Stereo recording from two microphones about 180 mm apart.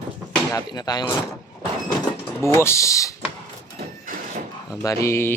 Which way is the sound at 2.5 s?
15° left (ahead or behind).